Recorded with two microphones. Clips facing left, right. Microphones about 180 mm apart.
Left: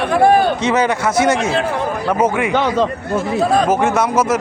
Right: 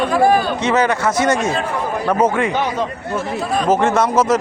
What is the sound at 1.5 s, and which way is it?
Speech, 80° left.